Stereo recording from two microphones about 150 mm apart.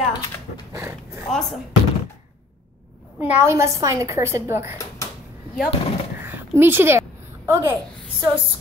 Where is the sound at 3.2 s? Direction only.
15° right (ahead or behind).